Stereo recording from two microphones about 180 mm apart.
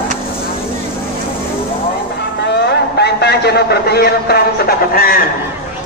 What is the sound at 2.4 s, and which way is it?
A man's voice, 65° left (ahead or behind).